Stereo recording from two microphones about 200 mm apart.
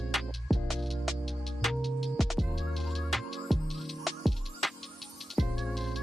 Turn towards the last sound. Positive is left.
turn(degrees=0)  # may be behind; listen again after turning